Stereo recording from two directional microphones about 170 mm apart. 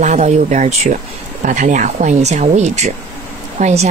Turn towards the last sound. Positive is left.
turn(degrees=-40)  # may be behind; listen again after turning